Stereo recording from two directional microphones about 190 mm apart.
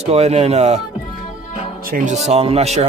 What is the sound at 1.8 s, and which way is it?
Speech, 40° right (ahead or behind).